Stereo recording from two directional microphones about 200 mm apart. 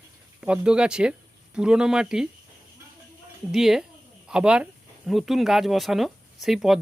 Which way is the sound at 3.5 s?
Centre (ahead or behind).